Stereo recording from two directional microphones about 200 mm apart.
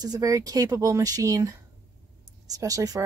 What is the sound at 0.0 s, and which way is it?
Speech, 20° right (ahead or behind).